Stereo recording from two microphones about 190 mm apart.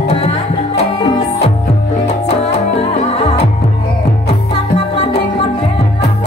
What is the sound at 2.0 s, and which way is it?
Music, 35° left (ahead or behind).